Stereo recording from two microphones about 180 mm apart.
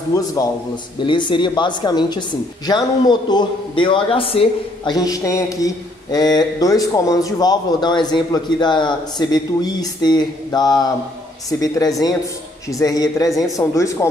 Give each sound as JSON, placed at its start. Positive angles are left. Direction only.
{"t": 0.1, "sound": "a woman's voice", "side_deg": 20}
{"t": 12.7, "sound": "a woman's voice", "side_deg": 20}